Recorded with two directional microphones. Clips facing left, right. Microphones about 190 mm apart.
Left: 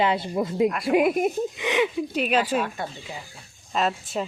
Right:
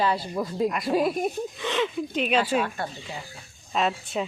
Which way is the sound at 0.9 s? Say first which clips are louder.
Left 5 dB; 20° left (ahead or behind).